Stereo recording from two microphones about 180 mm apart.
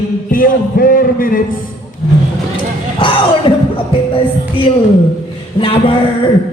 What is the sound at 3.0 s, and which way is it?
Speech, 25° left (ahead or behind).